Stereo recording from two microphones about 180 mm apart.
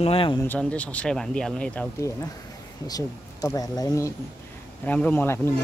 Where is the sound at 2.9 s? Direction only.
20° left (ahead or behind).